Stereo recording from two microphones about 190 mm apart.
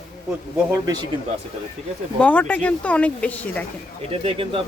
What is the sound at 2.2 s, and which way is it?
Speech, 10° left (ahead or behind).